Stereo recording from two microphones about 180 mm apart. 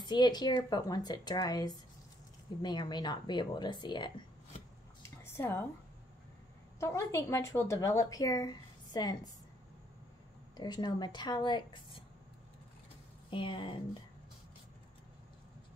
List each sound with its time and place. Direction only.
0.0 s speech: 25° left (ahead or behind)
5.0 s a sound: 15° left (ahead or behind)
6.8 s a woman's voice: 15° left (ahead or behind)
10.6 s speech: 25° left (ahead or behind)
13.3 s speech: 30° left (ahead or behind)